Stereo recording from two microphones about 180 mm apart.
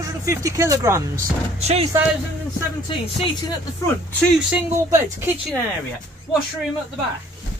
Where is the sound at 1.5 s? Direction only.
35° right (ahead or behind).